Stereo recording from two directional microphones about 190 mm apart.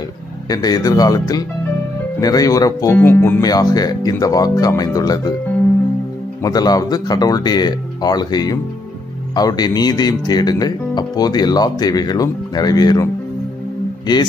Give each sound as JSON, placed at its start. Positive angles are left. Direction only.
{"t": 0.5, "sound": "speech", "side_deg": 20}
{"t": 6.4, "sound": "speech", "side_deg": 20}